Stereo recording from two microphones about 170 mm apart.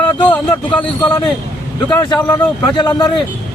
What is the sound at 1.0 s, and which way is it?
Speech, 25° left (ahead or behind).